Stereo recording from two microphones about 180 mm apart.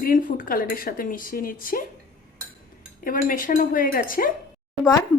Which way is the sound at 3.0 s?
50° left (ahead or behind).